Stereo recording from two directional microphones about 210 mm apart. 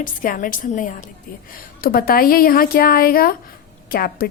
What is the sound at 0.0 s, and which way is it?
A woman's voice, 40° left (ahead or behind).